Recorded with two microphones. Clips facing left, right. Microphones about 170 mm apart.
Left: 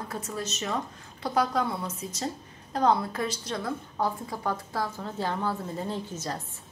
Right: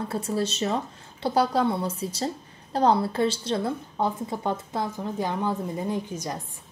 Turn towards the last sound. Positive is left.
turn(degrees=-15)  # may be behind; listen again after turning